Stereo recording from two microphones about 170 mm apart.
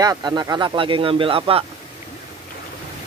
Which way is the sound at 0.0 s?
25° right (ahead or behind).